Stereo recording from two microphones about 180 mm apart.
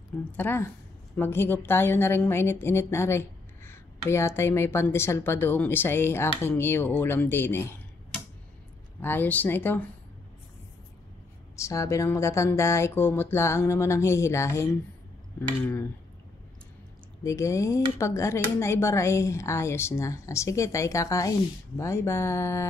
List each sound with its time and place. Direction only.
0.3 s a woman's voice: 10° left (ahead or behind)
9.0 s a woman's voice: 10° left (ahead or behind)
11.5 s a woman's voice: 15° left (ahead or behind)
17.2 s a woman's voice: 15° left (ahead or behind)